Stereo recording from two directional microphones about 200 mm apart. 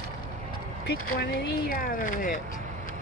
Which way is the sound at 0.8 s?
50° left (ahead or behind).